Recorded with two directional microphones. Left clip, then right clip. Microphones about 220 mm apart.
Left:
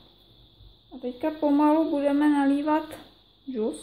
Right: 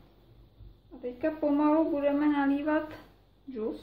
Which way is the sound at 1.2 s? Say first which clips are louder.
Left 4 dB; 40° left (ahead or behind).